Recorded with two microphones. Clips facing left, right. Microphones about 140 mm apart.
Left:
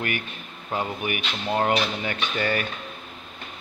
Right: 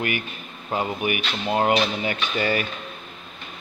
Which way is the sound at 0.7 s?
10° right (ahead or behind).